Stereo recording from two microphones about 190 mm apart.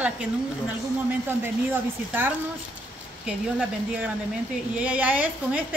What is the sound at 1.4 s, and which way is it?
A woman's voice, 10° right (ahead or behind).